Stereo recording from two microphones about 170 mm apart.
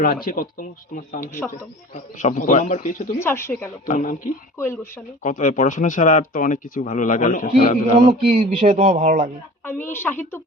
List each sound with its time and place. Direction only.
0.0 s speech: 55° left (ahead or behind)
3.2 s a woman's voice: 15° left (ahead or behind)
3.8 s speech: 50° left (ahead or behind)
4.5 s a woman's voice: 15° left (ahead or behind)
5.2 s speech: 45° left (ahead or behind)
8.0 s speech: 35° right (ahead or behind)
9.6 s a woman's voice: 15° left (ahead or behind)